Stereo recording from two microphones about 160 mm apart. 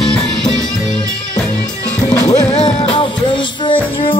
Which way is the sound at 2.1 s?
25° left (ahead or behind).